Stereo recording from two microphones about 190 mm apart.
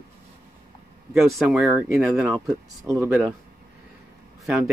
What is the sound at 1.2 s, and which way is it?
Speech, centre (ahead or behind).